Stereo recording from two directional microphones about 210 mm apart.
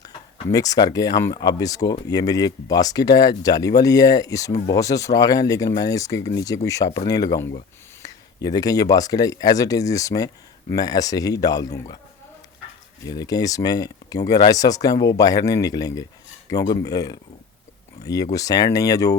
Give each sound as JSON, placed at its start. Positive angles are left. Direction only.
{"t": 0.5, "sound": "speech", "side_deg": 15}
{"t": 13.1, "sound": "speech", "side_deg": 20}